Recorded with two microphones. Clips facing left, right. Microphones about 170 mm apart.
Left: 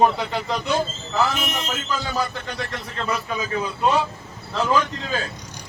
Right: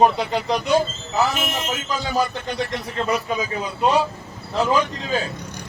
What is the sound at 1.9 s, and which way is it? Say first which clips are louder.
Speech: right 4 dB; 15° right (ahead or behind).